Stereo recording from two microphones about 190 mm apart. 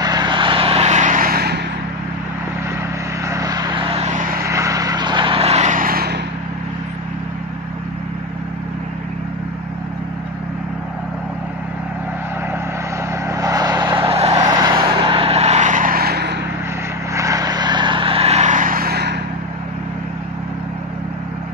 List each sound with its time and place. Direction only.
0.0 s vehicle: 20° right (ahead or behind); by 1.6 s 55° right (ahead or behind)
3.3 s vehicle: 20° right (ahead or behind); by 4.4 s 40° right (ahead or behind)
4.4 s vehicle: 15° right (ahead or behind); by 6.1 s 50° right (ahead or behind)
13.3 s vehicle: 20° right (ahead or behind)
14.4 s vehicle: 20° right (ahead or behind); by 16.3 s 60° right (ahead or behind)
17.1 s vehicle: 15° right (ahead or behind); by 19.1 s 55° right (ahead or behind)